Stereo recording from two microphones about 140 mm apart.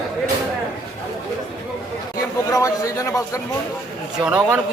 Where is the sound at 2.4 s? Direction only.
25° left (ahead or behind).